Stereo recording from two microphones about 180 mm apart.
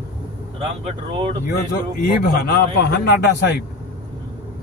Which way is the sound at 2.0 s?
60° left (ahead or behind).